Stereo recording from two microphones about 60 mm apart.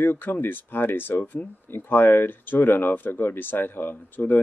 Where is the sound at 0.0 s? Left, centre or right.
Left.